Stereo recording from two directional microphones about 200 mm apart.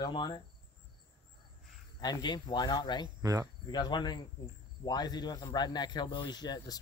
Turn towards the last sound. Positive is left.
turn(degrees=20)  # may be behind; listen again after turning